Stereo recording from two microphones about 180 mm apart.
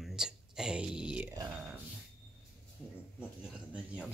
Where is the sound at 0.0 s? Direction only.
5° right (ahead or behind).